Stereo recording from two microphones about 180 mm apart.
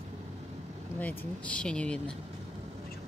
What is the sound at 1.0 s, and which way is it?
Speech, 10° left (ahead or behind).